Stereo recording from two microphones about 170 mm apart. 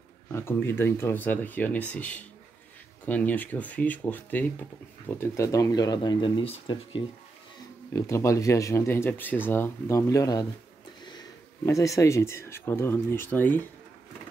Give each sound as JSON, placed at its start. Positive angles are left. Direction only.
{"t": 0.3, "sound": "speech", "side_deg": 15}
{"t": 7.9, "sound": "speech", "side_deg": 15}